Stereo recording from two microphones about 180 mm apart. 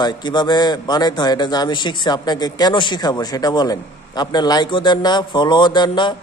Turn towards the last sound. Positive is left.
turn(degrees=25)  # may be behind; listen again after turning